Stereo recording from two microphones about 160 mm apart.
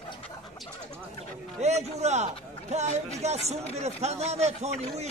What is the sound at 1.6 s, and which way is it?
A man's voice, 45° right (ahead or behind).